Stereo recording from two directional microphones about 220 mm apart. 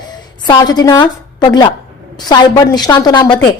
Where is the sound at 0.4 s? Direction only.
20° left (ahead or behind).